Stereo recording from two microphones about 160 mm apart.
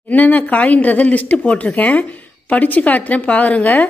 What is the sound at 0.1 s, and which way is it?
Speech, 10° left (ahead or behind).